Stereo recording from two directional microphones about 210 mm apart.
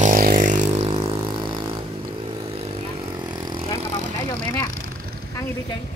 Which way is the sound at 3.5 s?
25° right (ahead or behind).